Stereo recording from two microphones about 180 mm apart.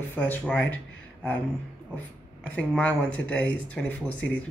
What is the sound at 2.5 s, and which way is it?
Speech, 5° left (ahead or behind).